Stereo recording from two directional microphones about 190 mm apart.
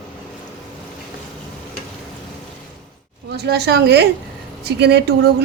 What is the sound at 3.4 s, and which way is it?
Speech, 60° right (ahead or behind).